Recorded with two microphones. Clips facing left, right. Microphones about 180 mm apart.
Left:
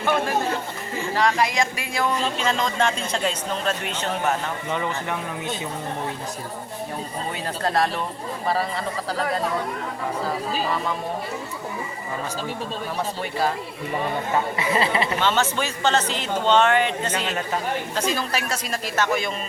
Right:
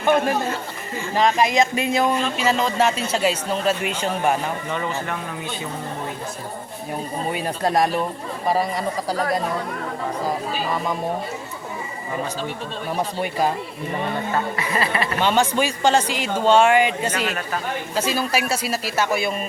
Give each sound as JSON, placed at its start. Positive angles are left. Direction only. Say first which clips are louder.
{"t": 0.0, "sound": "a man's voice", "louder": "right 3 dB", "side_deg": -20}
{"t": 2.4, "sound": "speech", "louder": "right 4 dB", "side_deg": -5}
{"t": 4.7, "sound": "speech", "louder": "even", "side_deg": 15}
{"t": 7.3, "sound": "speech", "louder": "right 3 dB", "side_deg": -15}
{"t": 14.5, "sound": "speech", "louder": "left 1 dB", "side_deg": 20}
{"t": 15.2, "sound": "speech", "louder": "right 3 dB", "side_deg": -15}